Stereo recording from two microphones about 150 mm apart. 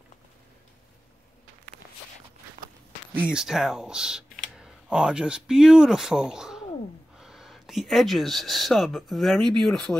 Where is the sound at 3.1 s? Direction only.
5° right (ahead or behind).